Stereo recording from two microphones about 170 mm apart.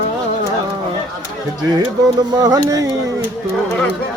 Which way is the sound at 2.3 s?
25° right (ahead or behind).